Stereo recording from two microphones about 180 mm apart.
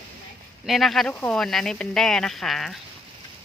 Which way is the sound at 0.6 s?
Centre (ahead or behind).